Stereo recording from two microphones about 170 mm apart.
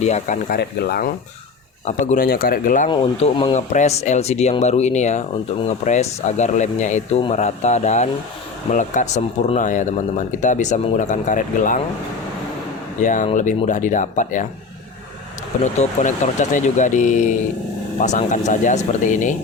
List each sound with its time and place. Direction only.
0.0 s speech: 40° left (ahead or behind)
0.4 s speech: 65° left (ahead or behind)
1.9 s speech: 45° left (ahead or behind)
2.9 s speech: 30° left (ahead or behind); by 11.8 s 50° left (ahead or behind)
13.0 s speech: 45° left (ahead or behind)
15.6 s speech: 45° left (ahead or behind)